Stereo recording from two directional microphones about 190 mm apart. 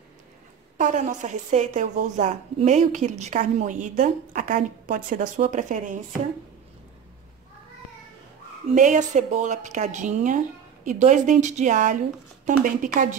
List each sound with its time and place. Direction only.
0.7 s a woman's voice: 45° right (ahead or behind)
8.6 s a woman's voice: 40° right (ahead or behind)